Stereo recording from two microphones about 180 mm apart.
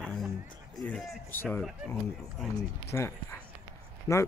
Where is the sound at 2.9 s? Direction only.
15° left (ahead or behind).